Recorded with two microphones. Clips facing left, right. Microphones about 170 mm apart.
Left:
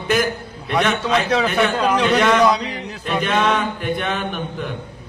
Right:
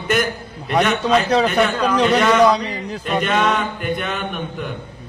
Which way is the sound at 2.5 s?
35° right (ahead or behind).